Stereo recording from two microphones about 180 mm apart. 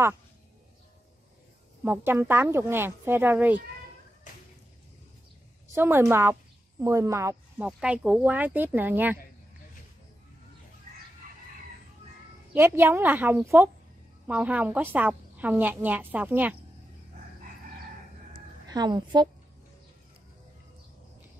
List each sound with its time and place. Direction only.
1.9 s a woman's voice: 10° right (ahead or behind)
5.8 s a woman's voice: 10° right (ahead or behind)
12.5 s a woman's voice: 15° right (ahead or behind)
18.7 s a woman's voice: 20° right (ahead or behind)